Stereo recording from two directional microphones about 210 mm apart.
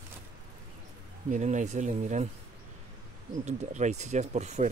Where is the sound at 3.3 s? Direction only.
35° right (ahead or behind).